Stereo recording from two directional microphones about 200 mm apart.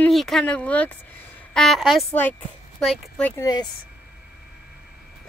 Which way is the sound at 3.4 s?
20° left (ahead or behind).